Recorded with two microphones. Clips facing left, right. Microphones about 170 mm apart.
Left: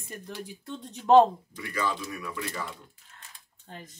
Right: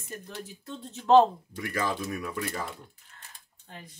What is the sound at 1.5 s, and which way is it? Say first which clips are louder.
Speech: right 1 dB; 45° right (ahead or behind).